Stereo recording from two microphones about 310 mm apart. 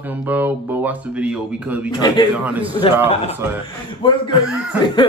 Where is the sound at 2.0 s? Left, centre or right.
Centre.